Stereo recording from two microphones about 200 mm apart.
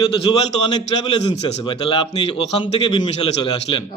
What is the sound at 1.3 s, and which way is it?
A man's voice, 25° left (ahead or behind).